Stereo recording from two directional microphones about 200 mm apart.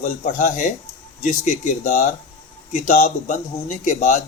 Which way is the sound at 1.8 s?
40° left (ahead or behind).